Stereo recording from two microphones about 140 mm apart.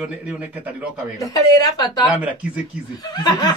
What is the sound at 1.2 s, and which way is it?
Speech, 25° left (ahead or behind).